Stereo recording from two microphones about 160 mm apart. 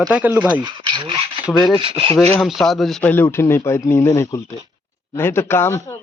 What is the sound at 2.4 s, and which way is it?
Speech, centre (ahead or behind).